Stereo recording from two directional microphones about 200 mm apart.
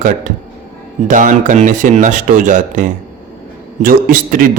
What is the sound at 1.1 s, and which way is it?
A man's voice, 40° right (ahead or behind).